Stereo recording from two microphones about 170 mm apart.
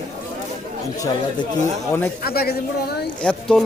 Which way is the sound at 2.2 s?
65° left (ahead or behind).